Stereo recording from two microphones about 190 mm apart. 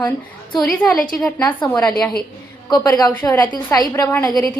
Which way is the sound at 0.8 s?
5° left (ahead or behind).